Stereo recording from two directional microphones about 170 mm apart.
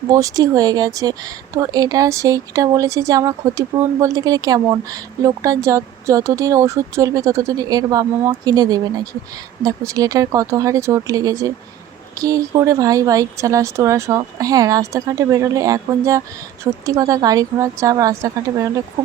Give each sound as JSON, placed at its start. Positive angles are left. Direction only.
{"t": 0.1, "sound": "speech", "side_deg": -20}